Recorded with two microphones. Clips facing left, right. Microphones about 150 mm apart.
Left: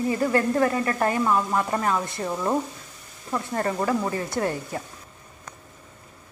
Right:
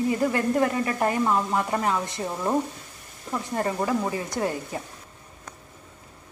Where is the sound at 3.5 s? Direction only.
10° right (ahead or behind).